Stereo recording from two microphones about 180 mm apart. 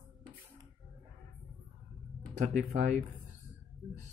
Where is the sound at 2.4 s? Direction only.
40° right (ahead or behind).